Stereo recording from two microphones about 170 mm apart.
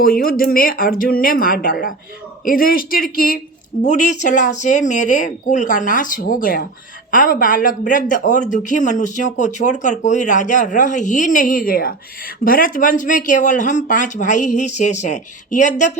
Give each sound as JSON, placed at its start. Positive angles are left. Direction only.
{"t": 0.0, "sound": "speech", "side_deg": 60}
{"t": 3.8, "sound": "speech", "side_deg": 45}